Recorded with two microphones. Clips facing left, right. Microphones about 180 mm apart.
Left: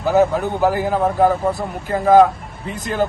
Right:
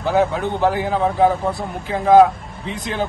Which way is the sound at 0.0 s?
Centre (ahead or behind).